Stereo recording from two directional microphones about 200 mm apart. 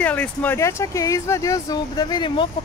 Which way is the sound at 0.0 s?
5° left (ahead or behind).